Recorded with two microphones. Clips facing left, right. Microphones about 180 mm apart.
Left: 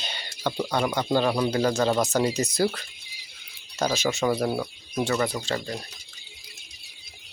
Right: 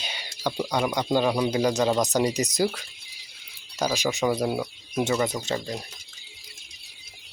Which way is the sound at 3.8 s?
10° right (ahead or behind).